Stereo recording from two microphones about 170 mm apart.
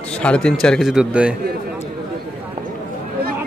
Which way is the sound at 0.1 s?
5° left (ahead or behind).